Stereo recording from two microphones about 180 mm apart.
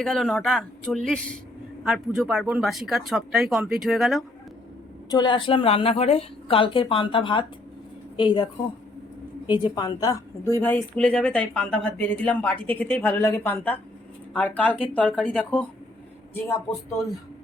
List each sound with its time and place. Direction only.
0.0 s speech: 5° left (ahead or behind)
5.1 s a woman's voice: 25° left (ahead or behind)
9.5 s a woman's voice: 25° left (ahead or behind); by 15.6 s 5° left (ahead or behind)